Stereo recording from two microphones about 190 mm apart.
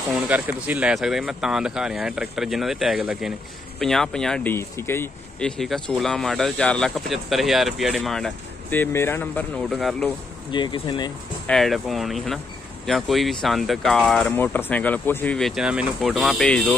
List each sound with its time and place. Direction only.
0.1 s speech: 10° right (ahead or behind); by 5.5 s 10° left (ahead or behind)
5.6 s speech: centre (ahead or behind)
10.5 s speech: 25° left (ahead or behind)
11.4 s speech: centre (ahead or behind)